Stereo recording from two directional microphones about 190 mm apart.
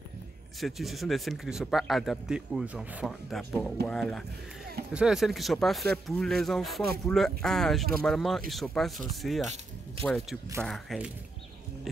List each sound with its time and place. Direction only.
0.6 s speech: centre (ahead or behind)